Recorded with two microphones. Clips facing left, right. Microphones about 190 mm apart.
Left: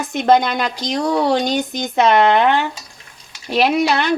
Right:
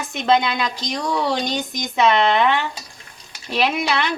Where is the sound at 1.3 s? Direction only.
55° left (ahead or behind).